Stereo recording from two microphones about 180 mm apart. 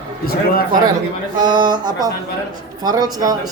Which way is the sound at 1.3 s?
25° right (ahead or behind).